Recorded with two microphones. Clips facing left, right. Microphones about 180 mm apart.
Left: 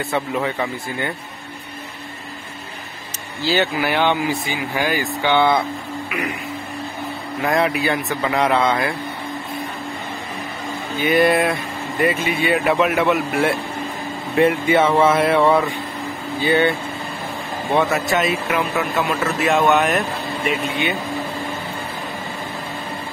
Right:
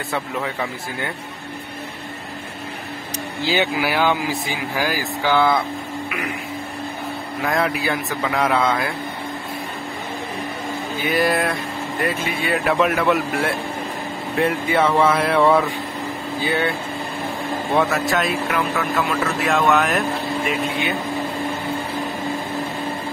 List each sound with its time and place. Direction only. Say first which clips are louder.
0.1 s speech: left 2 dB; centre (ahead or behind)
3.4 s speech: left 1 dB; 10° right (ahead or behind)
7.4 s speech: left 3 dB; centre (ahead or behind)
11.1 s speech: left 4 dB; centre (ahead or behind)
17.7 s speech: left 1 dB; centre (ahead or behind)